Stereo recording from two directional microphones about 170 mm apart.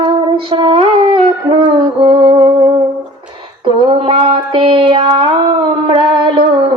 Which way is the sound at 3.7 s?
30° right (ahead or behind).